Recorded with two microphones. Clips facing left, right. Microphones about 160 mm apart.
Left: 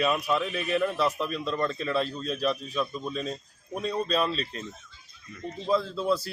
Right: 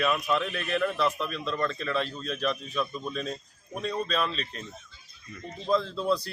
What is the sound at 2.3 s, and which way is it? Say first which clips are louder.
Speech: left 1 dB; 35° left (ahead or behind).